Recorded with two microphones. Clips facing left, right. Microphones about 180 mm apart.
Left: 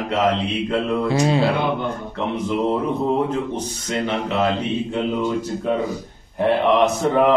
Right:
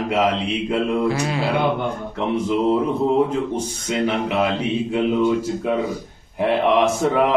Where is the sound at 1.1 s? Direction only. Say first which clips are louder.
Left 4 dB; 25° left (ahead or behind).